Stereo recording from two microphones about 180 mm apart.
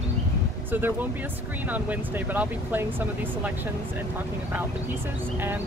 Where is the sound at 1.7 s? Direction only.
10° right (ahead or behind).